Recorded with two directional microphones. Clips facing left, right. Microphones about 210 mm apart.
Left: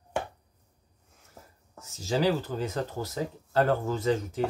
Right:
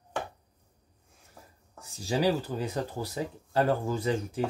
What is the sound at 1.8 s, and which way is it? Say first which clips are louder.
Speech: left 1 dB; 15° right (ahead or behind).